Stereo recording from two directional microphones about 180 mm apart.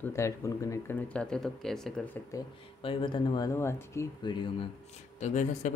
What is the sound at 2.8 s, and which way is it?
Speech, 25° left (ahead or behind).